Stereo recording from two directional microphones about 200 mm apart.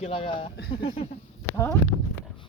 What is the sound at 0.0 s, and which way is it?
Speech, 25° left (ahead or behind).